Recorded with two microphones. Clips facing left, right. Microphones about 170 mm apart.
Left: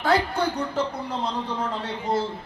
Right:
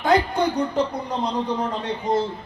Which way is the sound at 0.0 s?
15° right (ahead or behind).